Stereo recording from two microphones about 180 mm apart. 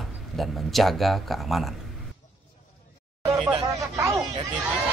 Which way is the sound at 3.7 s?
15° right (ahead or behind).